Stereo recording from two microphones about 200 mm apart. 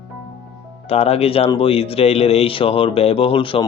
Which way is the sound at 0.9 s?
30° left (ahead or behind).